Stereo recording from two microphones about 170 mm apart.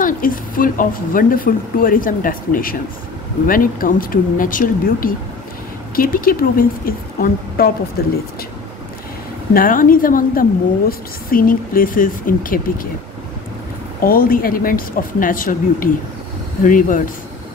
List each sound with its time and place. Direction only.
0.0 s speech: 55° left (ahead or behind)
9.5 s speech: 55° left (ahead or behind)
14.0 s speech: 55° left (ahead or behind)